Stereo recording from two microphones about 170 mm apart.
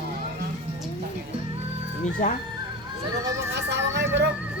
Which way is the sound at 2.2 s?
50° left (ahead or behind).